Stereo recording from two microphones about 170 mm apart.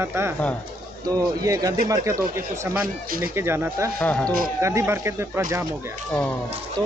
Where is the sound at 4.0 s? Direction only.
10° left (ahead or behind).